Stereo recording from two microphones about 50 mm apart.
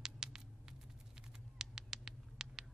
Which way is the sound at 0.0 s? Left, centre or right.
Centre.